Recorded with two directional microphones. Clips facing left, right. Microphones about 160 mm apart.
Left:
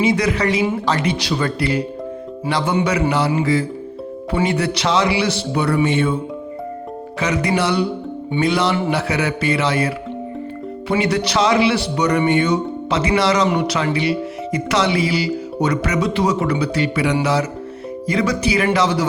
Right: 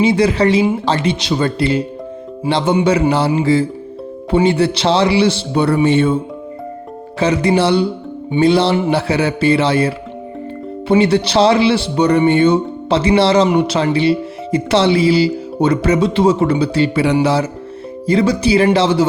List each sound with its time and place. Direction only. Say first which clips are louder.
0.0 s speech: right 5 dB; 30° right (ahead or behind)
7.2 s speech: right 5 dB; 30° right (ahead or behind)